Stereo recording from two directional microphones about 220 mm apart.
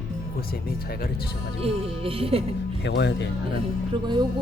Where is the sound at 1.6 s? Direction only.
25° right (ahead or behind).